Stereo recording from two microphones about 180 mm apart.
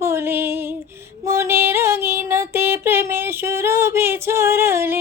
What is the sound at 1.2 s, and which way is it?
Music, 15° right (ahead or behind).